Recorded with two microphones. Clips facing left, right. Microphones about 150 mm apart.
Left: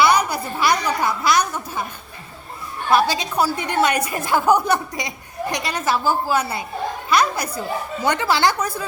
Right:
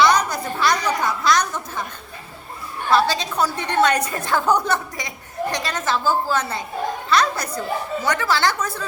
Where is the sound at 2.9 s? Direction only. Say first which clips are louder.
Left 1 dB; 15° left (ahead or behind).